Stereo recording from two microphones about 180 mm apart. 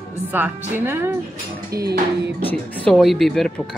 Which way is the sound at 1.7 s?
60° right (ahead or behind).